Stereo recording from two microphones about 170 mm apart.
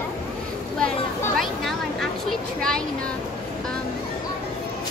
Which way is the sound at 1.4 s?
Centre (ahead or behind).